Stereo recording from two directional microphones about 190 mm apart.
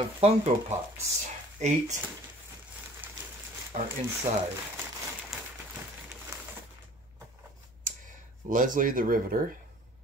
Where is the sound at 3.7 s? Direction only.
40° right (ahead or behind).